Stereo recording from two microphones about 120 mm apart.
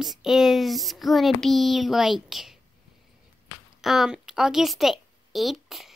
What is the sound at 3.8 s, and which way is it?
A child's voice, centre (ahead or behind).